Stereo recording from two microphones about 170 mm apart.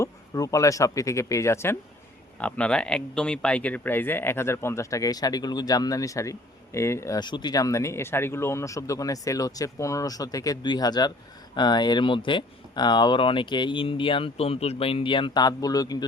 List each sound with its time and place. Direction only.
0.0 s speech: 20° left (ahead or behind)